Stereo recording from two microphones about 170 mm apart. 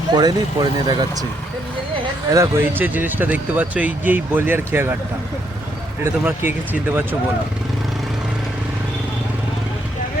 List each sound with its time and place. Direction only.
0.1 s speech: 25° right (ahead or behind)
2.3 s speech: 15° right (ahead or behind)
6.2 s speech: 10° right (ahead or behind)